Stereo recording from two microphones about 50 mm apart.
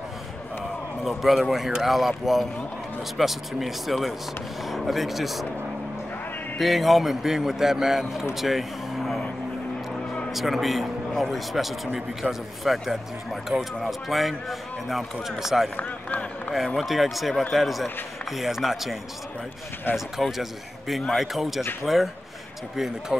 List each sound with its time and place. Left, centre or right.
1.0 s speech: centre
6.6 s speech: centre
10.3 s speech: centre
15.7 s speech: left
16.5 s speech: centre
20.2 s speech: centre